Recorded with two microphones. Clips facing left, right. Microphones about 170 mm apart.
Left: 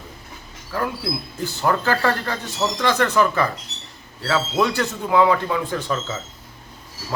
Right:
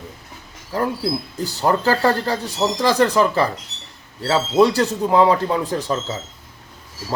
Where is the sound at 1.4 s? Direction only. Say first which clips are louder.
Right 1 dB; 35° right (ahead or behind).